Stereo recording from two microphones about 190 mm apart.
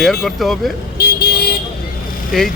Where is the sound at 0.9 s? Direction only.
55° left (ahead or behind).